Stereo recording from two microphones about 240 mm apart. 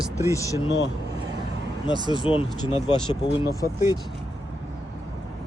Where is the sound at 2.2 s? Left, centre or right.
Left.